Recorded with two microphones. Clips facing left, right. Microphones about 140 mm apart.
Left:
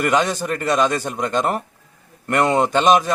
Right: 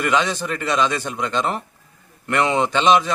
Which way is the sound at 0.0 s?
45° left (ahead or behind).